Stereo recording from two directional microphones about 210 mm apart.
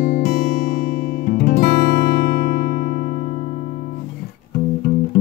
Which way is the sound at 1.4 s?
45° left (ahead or behind).